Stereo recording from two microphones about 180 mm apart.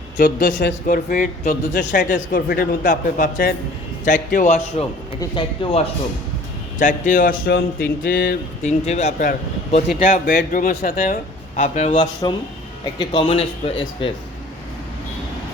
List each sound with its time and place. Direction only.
0.2 s speech: 60° left (ahead or behind)
5.2 s speech: 25° left (ahead or behind)
6.7 s speech: 45° left (ahead or behind)
8.6 s speech: 35° left (ahead or behind)
12.2 s speech: 20° left (ahead or behind)